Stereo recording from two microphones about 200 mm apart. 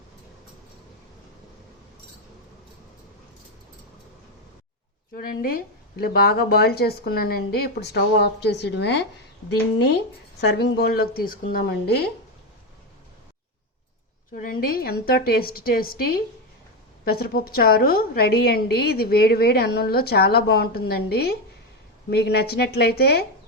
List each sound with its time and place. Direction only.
5.1 s a woman's voice: 45° left (ahead or behind)
10.4 s a woman's voice: 60° left (ahead or behind)
14.3 s a woman's voice: 45° left (ahead or behind)